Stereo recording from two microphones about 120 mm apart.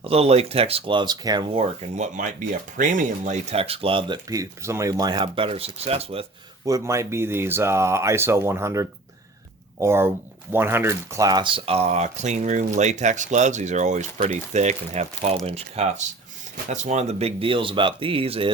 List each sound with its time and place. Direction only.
0.0 s speech: 55° right (ahead or behind); by 1.5 s 35° right (ahead or behind)
2.0 s speech: 90° right; by 4.2 s 50° right (ahead or behind)
4.3 s speech: 25° right (ahead or behind); by 6.2 s 55° right (ahead or behind)
6.7 s speech: 25° right (ahead or behind); by 16.0 s 65° right (ahead or behind)
16.6 s speech: 75° right (ahead or behind); by 18.5 s 50° right (ahead or behind)